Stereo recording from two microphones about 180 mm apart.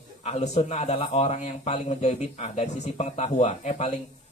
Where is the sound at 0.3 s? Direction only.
35° left (ahead or behind).